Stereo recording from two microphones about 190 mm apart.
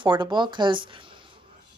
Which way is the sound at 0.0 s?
25° right (ahead or behind).